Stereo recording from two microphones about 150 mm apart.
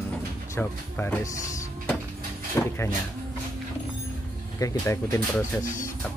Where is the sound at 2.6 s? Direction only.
15° left (ahead or behind).